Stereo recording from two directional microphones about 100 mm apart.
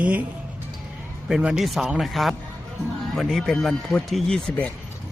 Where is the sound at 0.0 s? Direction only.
15° right (ahead or behind).